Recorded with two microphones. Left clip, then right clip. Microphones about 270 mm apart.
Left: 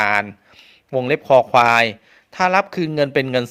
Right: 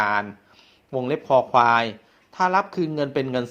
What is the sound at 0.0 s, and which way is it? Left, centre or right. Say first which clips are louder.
Speech: left 4 dB; left.